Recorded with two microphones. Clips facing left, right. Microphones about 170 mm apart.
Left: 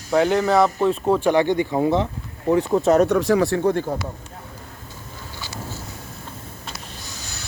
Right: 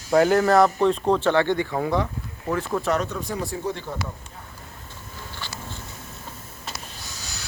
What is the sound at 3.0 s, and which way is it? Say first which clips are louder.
Speech: left 12 dB; 80° left.